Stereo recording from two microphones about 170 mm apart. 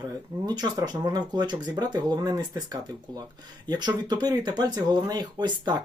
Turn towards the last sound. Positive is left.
turn(degrees=-25)  # may be behind; listen again after turning